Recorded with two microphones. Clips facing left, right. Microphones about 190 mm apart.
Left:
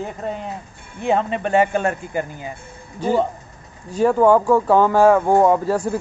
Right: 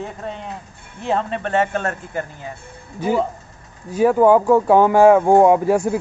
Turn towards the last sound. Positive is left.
turn(degrees=-10)  # may be behind; listen again after turning